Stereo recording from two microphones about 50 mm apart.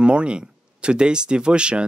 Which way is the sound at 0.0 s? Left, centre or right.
Right.